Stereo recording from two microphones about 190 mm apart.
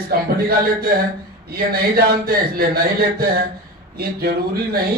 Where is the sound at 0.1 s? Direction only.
50° right (ahead or behind).